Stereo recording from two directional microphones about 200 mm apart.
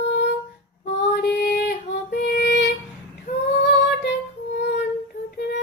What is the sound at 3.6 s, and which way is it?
Music, 60° left (ahead or behind).